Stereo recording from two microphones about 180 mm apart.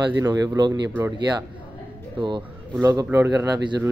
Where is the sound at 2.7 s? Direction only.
15° right (ahead or behind).